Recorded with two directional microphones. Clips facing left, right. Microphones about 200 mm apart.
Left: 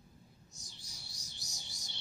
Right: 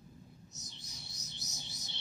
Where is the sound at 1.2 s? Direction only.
15° left (ahead or behind).